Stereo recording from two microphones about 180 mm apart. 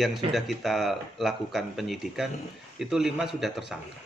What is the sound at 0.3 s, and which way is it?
Speech, centre (ahead or behind).